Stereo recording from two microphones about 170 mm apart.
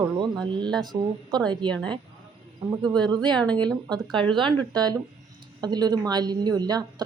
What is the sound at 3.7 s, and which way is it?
A woman's voice, 25° right (ahead or behind).